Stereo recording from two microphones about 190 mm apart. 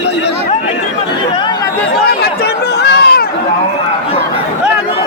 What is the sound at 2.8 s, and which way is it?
Chatter, 60° left (ahead or behind).